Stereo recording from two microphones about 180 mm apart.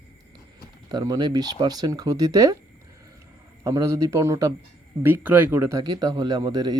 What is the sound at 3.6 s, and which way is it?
Speech, 20° right (ahead or behind).